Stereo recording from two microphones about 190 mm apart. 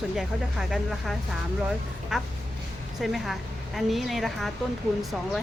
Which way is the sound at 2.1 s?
Centre (ahead or behind).